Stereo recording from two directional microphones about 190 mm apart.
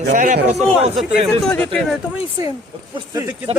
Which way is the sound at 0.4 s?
35° right (ahead or behind).